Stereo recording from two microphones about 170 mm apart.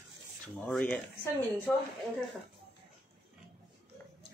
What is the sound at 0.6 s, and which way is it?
Speech, 5° left (ahead or behind).